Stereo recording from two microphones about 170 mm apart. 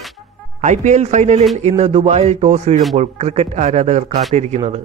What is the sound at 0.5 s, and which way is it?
Speech, 45° right (ahead or behind).